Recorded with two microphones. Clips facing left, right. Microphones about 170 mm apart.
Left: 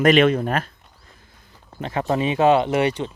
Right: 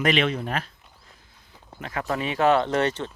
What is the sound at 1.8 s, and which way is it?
Speech, 25° left (ahead or behind).